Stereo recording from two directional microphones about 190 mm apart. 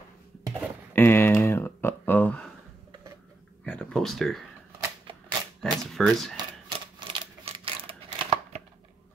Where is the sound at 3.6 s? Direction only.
5° left (ahead or behind).